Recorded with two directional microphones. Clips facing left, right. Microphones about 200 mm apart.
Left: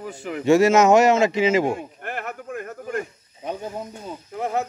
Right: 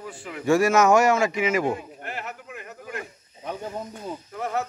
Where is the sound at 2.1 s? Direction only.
50° left (ahead or behind).